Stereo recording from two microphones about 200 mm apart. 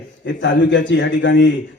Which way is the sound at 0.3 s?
65° left (ahead or behind).